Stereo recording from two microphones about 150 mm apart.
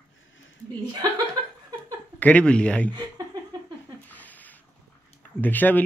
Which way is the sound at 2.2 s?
10° left (ahead or behind).